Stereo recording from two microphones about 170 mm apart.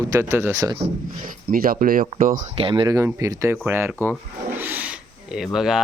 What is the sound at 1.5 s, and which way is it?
Speech, 55° right (ahead or behind).